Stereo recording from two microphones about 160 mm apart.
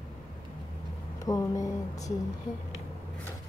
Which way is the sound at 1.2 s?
20° left (ahead or behind).